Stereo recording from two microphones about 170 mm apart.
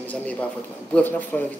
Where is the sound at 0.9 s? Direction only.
10° left (ahead or behind).